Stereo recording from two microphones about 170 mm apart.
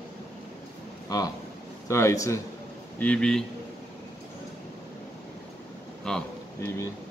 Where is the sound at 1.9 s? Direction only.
15° left (ahead or behind).